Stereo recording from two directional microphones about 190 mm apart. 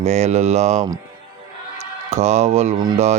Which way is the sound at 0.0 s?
35° right (ahead or behind).